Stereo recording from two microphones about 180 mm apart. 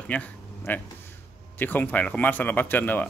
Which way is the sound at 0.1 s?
10° left (ahead or behind).